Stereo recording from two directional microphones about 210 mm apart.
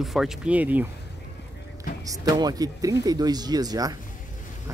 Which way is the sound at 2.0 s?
15° right (ahead or behind).